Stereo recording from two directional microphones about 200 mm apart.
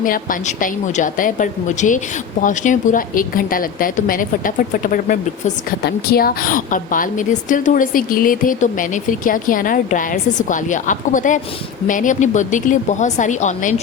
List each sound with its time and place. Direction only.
0.0 s a woman's voice: 45° left (ahead or behind)